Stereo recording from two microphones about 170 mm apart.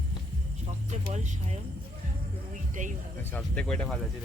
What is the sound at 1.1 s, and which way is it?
Speech, 40° right (ahead or behind).